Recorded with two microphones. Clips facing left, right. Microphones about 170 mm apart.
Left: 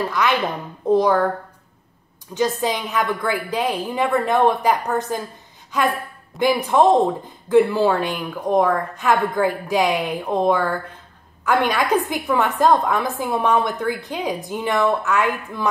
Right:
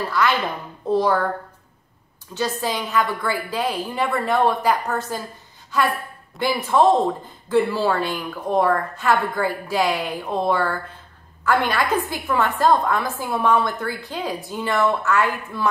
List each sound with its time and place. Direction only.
0.1 s a woman's voice: 15° left (ahead or behind)
2.3 s a woman's voice: 15° left (ahead or behind)
5.7 s a sound: 15° left (ahead or behind)
6.4 s a woman's voice: 15° left (ahead or behind)